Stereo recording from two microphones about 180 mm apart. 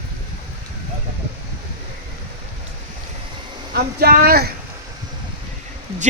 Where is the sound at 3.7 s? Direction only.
55° right (ahead or behind).